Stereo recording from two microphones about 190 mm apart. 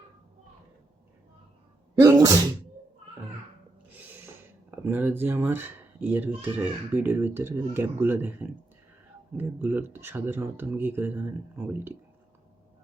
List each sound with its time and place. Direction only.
2.0 s sneeze: 20° right (ahead or behind)
3.9 s speech: 10° right (ahead or behind)